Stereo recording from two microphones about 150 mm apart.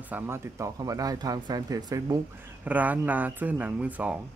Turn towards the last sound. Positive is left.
turn(degrees=-10)  # may be behind; listen again after turning